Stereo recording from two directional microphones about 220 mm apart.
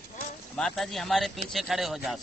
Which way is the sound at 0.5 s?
Centre (ahead or behind).